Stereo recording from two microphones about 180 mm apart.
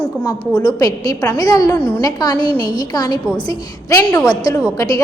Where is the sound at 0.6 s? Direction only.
20° left (ahead or behind).